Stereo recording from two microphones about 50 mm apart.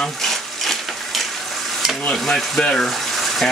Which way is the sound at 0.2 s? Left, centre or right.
Centre.